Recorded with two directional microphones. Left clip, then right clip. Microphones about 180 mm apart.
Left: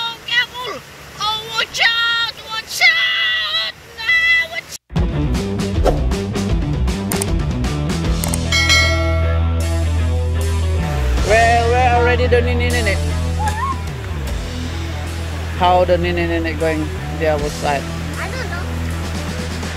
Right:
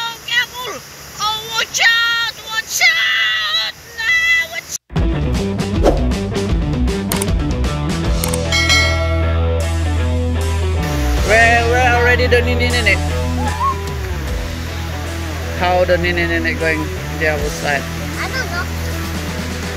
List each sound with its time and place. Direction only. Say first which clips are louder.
1.2 s vehicle: right 1 dB; 5° left (ahead or behind)
5.9 s music: right 3 dB; centre (ahead or behind)
8.5 s mechanisms: even; centre (ahead or behind)
11.2 s music: right 1 dB; 10° left (ahead or behind)
15.6 s speech: left 1 dB; 15° left (ahead or behind)